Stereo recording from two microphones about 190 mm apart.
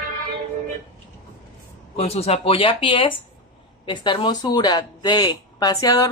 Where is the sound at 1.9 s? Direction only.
35° left (ahead or behind).